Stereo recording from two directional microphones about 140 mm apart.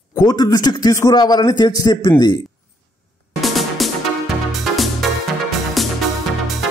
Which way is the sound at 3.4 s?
Centre (ahead or behind).